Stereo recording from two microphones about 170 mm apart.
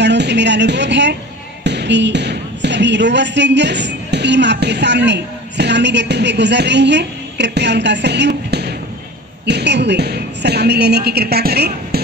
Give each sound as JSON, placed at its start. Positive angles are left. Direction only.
{"t": 0.0, "sound": "a woman's voice", "side_deg": -90}